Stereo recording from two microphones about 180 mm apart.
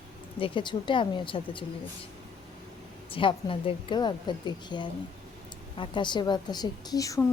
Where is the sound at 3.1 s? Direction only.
30° left (ahead or behind).